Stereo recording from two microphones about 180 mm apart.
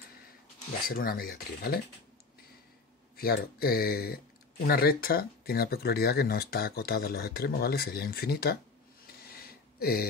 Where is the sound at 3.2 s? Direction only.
55° left (ahead or behind).